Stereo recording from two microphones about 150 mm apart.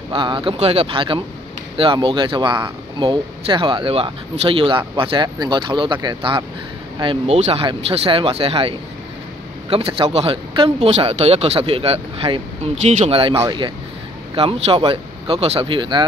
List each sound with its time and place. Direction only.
0.1 s speech: 35° right (ahead or behind)